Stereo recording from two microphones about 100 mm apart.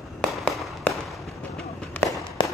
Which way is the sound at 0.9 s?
15° left (ahead or behind).